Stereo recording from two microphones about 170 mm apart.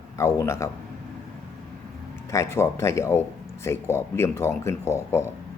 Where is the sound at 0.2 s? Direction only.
15° left (ahead or behind).